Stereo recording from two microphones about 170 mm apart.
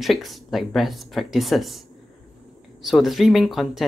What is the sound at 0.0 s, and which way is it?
Speech, centre (ahead or behind).